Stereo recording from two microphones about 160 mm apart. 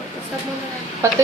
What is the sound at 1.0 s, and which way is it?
Speech, 15° right (ahead or behind).